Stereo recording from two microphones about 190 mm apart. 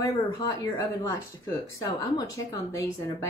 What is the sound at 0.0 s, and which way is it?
Speech, 15° left (ahead or behind).